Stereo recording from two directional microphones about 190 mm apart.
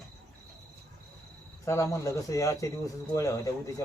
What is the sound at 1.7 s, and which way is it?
Speech, 15° left (ahead or behind).